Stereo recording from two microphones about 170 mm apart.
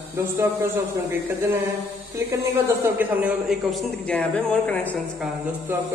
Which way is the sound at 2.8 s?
10° right (ahead or behind).